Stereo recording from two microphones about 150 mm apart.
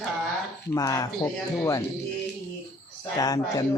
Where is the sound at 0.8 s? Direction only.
25° left (ahead or behind).